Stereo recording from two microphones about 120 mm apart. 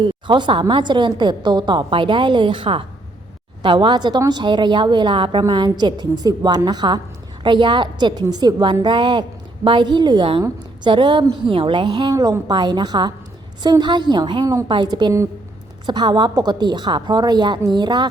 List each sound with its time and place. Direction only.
0.0 s a woman's voice: 40° right (ahead or behind)